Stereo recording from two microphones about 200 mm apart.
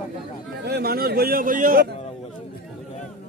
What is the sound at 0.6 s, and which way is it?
A man's voice, 55° right (ahead or behind).